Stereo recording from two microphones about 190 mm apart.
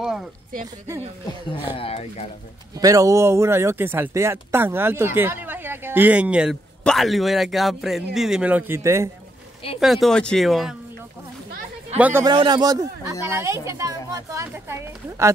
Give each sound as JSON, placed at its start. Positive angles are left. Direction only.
{"t": 1.8, "sound": "speech", "side_deg": 30}
{"t": 2.7, "sound": "a man's voice", "side_deg": -20}
{"t": 9.8, "sound": "a man's voice", "side_deg": 0}
{"t": 12.0, "sound": "speech", "side_deg": -10}
{"t": 12.3, "sound": "speech", "side_deg": -25}